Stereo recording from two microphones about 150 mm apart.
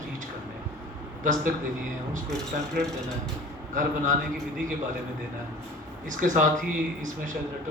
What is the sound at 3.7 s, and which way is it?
Speech, 60° right (ahead or behind).